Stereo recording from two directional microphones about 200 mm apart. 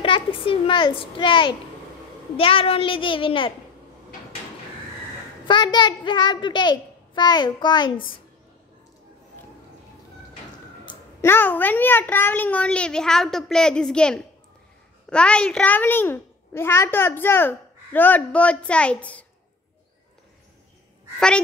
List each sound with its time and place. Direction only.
0.0 s a child's voice: 25° left (ahead or behind)
5.5 s a child's voice: 20° left (ahead or behind)
10.9 s a child's voice: 15° left (ahead or behind)